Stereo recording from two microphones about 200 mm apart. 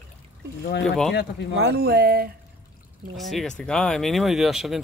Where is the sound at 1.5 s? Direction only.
55° right (ahead or behind).